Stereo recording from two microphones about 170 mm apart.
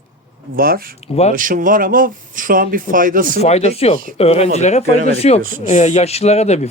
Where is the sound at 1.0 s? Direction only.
40° left (ahead or behind).